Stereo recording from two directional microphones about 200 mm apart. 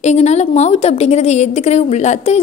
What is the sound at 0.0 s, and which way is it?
A woman's voice, 35° left (ahead or behind).